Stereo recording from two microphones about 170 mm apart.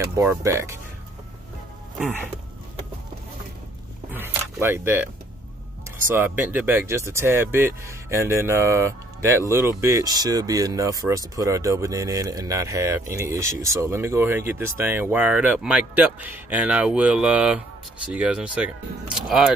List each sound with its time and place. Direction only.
0.0 s speech: 15° right (ahead or behind)
4.1 s a sound: 10° right (ahead or behind)
6.0 s speech: 10° right (ahead or behind)